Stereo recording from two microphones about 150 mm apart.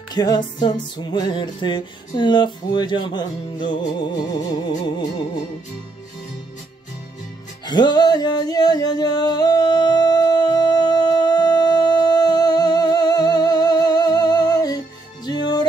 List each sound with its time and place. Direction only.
0.1 s music: 25° left (ahead or behind)
7.6 s music: 30° left (ahead or behind)